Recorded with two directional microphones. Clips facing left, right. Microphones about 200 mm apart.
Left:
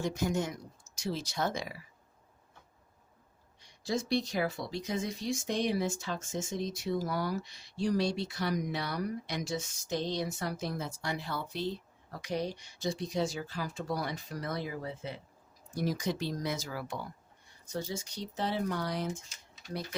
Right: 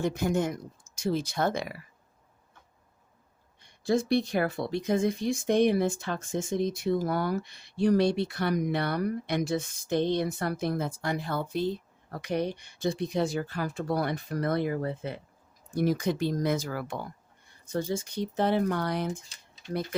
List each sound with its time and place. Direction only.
0.0 s speech: 55° right (ahead or behind)
3.6 s speech: 55° right (ahead or behind)